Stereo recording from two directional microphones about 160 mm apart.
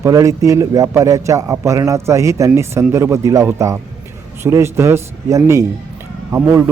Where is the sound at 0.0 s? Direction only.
20° right (ahead or behind).